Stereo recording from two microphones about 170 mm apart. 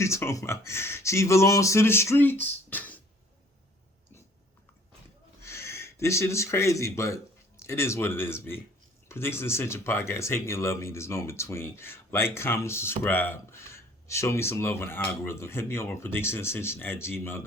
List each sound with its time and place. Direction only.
0.0 s speech: 15° left (ahead or behind)
2.4 s a sound: 10° left (ahead or behind)
5.4 s speech: 15° left (ahead or behind)